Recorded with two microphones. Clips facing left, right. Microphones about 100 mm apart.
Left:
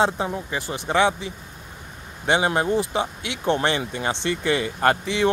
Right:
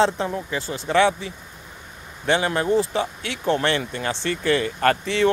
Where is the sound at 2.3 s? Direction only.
20° left (ahead or behind).